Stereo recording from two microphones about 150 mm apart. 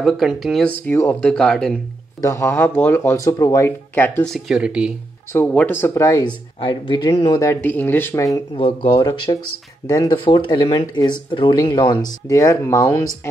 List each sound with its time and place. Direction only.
0.0 s speech: centre (ahead or behind)
2.2 s speech: 15° left (ahead or behind)
4.3 s speech: 5° right (ahead or behind)
5.3 s speech: 10° left (ahead or behind); by 7.5 s 25° left (ahead or behind)
7.6 s speech: 15° left (ahead or behind)
8.5 s speech: 35° left (ahead or behind)
9.0 s speech: 25° left (ahead or behind)